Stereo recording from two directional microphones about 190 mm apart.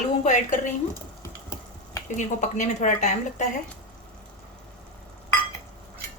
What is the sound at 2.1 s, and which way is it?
Speech, 40° left (ahead or behind).